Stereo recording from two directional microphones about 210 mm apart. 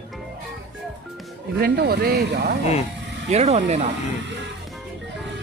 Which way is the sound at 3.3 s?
35° right (ahead or behind).